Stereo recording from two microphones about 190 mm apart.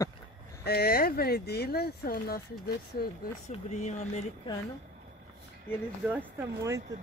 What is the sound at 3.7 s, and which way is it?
Speech, 40° left (ahead or behind).